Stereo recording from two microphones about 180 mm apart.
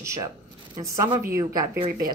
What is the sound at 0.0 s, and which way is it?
Speech, 15° right (ahead or behind).